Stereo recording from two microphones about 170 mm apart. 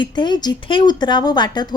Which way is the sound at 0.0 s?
25° left (ahead or behind).